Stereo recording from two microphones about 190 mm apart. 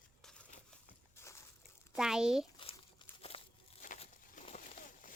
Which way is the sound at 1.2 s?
15° left (ahead or behind).